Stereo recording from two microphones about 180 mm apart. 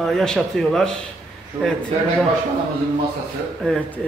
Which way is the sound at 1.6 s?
20° right (ahead or behind).